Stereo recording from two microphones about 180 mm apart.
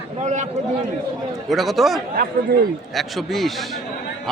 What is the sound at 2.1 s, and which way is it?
Speech, 55° right (ahead or behind).